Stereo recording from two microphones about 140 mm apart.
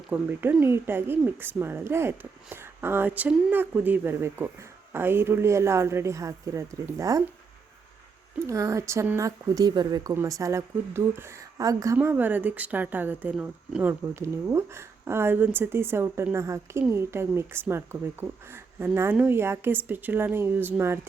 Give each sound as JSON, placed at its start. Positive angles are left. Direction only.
{"t": 0.1, "sound": "a woman's voice", "side_deg": -15}
{"t": 8.4, "sound": "a woman's voice", "side_deg": -20}
{"t": 11.9, "sound": "speech", "side_deg": -10}